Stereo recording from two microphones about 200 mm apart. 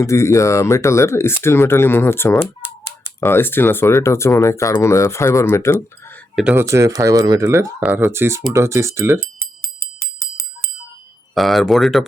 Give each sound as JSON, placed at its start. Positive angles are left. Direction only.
{"t": 0.0, "sound": "speech", "side_deg": 15}
{"t": 6.3, "sound": "speech", "side_deg": -5}
{"t": 10.0, "sound": "bicycle bell", "side_deg": -15}
{"t": 11.3, "sound": "speech", "side_deg": 0}